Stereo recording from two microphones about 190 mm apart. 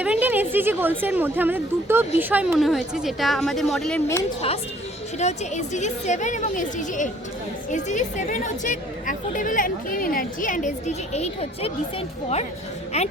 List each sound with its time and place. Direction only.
0.0 s speech: 10° right (ahead or behind)
4.4 s a woman's voice: 30° left (ahead or behind)